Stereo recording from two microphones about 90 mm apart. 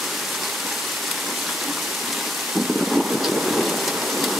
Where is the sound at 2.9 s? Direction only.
5° right (ahead or behind).